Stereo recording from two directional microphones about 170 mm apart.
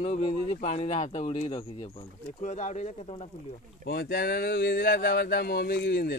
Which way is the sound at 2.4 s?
45° left (ahead or behind).